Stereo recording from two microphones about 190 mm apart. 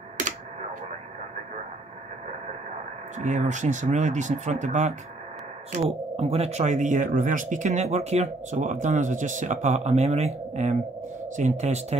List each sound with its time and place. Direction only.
3.2 s speech: 40° right (ahead or behind)